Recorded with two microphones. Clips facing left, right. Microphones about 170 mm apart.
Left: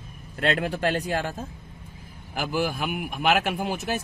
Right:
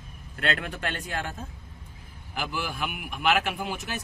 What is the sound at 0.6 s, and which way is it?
Speech, 35° left (ahead or behind).